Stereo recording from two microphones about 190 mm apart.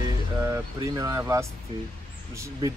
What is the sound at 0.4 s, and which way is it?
Speech, 15° right (ahead or behind).